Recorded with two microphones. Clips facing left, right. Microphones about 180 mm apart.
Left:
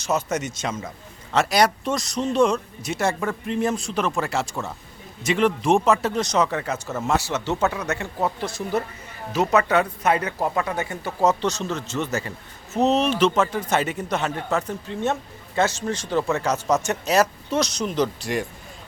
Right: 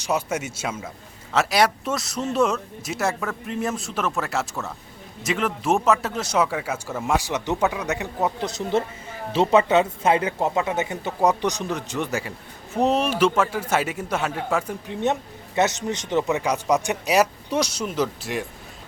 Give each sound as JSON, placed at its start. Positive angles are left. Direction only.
{"t": 0.0, "sound": "a man's voice", "side_deg": -10}